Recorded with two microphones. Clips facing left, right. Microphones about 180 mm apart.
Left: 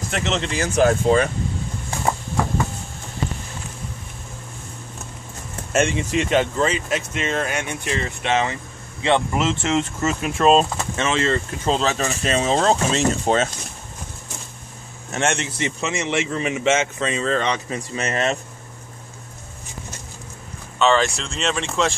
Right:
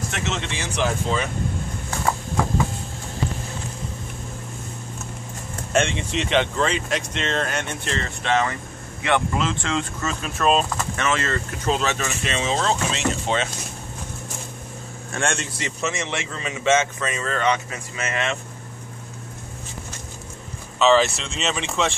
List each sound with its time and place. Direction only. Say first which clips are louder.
0.1 s speech: left 9 dB; 40° left (ahead or behind)
5.7 s speech: left 2 dB; 5° left (ahead or behind); by 13.5 s 40° left (ahead or behind)
15.0 s speech: left 3 dB; 20° left (ahead or behind); by 18.4 s 40° left (ahead or behind)
20.8 s speech: right 1 dB; 5° right (ahead or behind)